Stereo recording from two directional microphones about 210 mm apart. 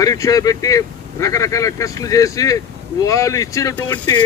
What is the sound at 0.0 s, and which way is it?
Speech, 15° left (ahead or behind).